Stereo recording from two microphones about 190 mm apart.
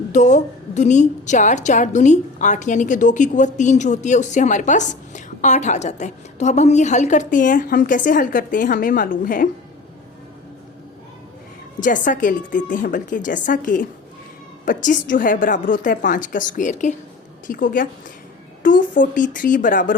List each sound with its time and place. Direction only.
0.1 s a woman's voice: 40° left (ahead or behind)
11.8 s a woman's voice: 45° left (ahead or behind)